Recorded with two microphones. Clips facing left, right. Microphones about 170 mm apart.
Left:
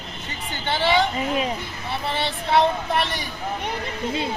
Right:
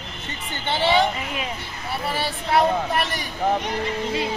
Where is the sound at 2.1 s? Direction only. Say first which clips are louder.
Left 1 dB; 5° right (ahead or behind).